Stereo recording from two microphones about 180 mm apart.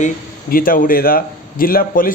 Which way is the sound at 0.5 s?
50° left (ahead or behind).